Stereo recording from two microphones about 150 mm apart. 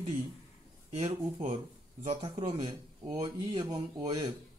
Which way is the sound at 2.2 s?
30° right (ahead or behind).